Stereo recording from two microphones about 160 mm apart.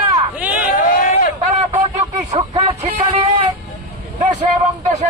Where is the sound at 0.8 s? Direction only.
55° left (ahead or behind).